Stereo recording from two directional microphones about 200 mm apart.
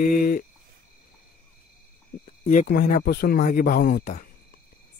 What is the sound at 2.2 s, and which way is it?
A man's voice, 40° left (ahead or behind).